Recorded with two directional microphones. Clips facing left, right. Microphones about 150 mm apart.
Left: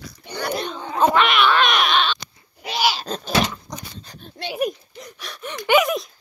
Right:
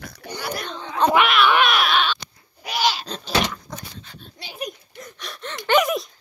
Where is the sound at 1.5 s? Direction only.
10° right (ahead or behind).